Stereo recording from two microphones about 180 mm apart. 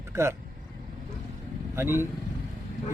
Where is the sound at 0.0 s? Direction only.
15° right (ahead or behind).